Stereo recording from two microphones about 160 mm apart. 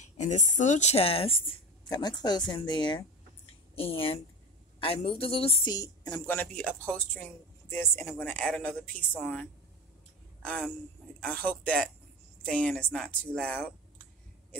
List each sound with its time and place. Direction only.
0.2 s a woman's voice: 50° left (ahead or behind)
5.6 s a woman's voice: 25° left (ahead or behind)